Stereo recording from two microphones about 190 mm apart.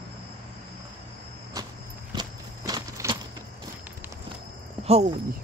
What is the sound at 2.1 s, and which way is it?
Horse, 20° right (ahead or behind).